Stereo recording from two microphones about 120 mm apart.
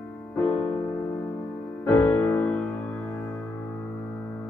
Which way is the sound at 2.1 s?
25° left (ahead or behind).